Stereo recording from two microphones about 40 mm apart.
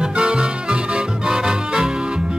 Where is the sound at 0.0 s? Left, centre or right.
Right.